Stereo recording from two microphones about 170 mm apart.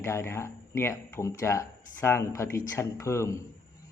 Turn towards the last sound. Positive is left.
turn(degrees=15)  # may be behind; listen again after turning